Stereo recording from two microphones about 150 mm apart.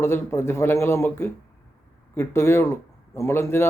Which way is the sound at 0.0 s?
15° left (ahead or behind).